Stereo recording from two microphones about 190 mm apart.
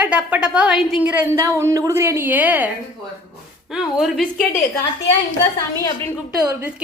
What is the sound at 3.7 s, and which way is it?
Speech, centre (ahead or behind).